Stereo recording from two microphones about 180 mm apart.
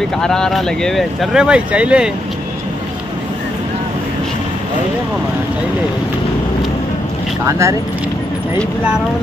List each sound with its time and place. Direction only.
0.2 s speech: 5° left (ahead or behind)
7.4 s speech: 15° right (ahead or behind)